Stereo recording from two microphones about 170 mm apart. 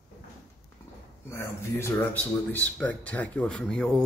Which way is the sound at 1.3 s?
15° left (ahead or behind).